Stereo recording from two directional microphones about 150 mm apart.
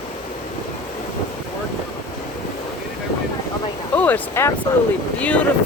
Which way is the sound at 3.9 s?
10° left (ahead or behind).